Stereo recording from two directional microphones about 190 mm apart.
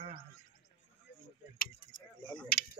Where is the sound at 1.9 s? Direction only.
25° left (ahead or behind).